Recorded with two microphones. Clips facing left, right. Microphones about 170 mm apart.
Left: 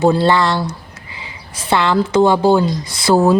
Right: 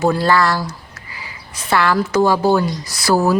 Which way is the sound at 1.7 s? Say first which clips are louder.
Left 2 dB; 20° left (ahead or behind).